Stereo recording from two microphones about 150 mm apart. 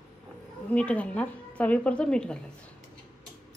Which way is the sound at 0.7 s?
10° left (ahead or behind).